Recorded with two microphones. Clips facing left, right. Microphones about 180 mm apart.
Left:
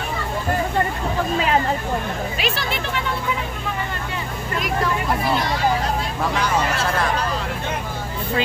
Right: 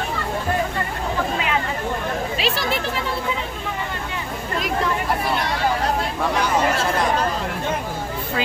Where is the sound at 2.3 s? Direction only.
30° right (ahead or behind).